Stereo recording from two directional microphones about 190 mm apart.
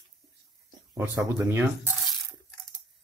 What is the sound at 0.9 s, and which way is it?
Speech, 15° right (ahead or behind).